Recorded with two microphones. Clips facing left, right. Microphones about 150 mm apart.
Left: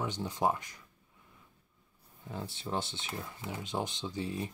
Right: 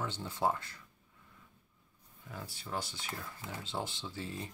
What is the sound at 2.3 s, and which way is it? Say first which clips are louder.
Speech: left 5 dB; 25° left (ahead or behind).